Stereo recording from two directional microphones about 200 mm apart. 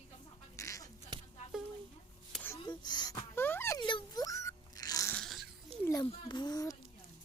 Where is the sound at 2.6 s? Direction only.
20° left (ahead or behind).